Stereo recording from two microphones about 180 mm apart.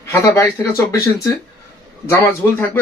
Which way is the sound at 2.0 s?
15° left (ahead or behind).